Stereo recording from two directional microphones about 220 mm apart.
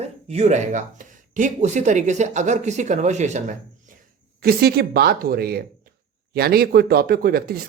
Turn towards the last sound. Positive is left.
turn(degrees=-40)  # may be behind; listen again after turning